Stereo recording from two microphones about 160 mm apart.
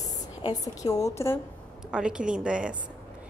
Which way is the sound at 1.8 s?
5° right (ahead or behind).